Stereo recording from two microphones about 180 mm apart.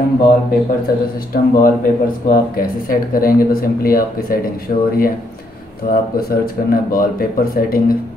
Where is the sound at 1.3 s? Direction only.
50° left (ahead or behind).